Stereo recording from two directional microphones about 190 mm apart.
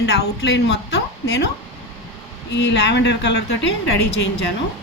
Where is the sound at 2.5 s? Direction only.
65° left (ahead or behind).